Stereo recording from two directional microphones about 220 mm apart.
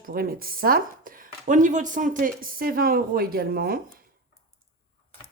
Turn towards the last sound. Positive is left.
turn(degrees=-45)  # may be behind; listen again after turning